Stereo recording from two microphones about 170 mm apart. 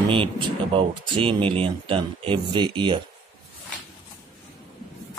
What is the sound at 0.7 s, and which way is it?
Speech, 30° right (ahead or behind).